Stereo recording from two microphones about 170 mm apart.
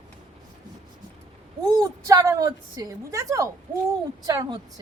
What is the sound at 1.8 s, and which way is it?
A woman's voice, 20° right (ahead or behind).